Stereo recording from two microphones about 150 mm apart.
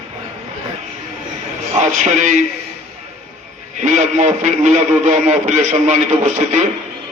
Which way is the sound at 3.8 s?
55° right (ahead or behind).